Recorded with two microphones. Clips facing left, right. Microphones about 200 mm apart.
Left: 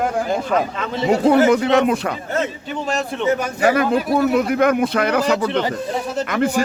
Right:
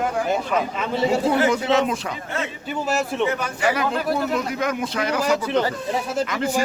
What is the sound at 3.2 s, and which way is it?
Speech, 45° left (ahead or behind).